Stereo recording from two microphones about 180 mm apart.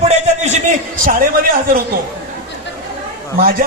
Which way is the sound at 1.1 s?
50° right (ahead or behind).